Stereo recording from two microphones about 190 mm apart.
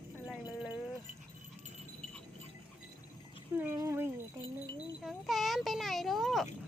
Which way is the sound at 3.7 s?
15° right (ahead or behind).